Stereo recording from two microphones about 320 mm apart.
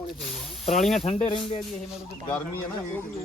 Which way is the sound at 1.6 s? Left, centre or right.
Centre.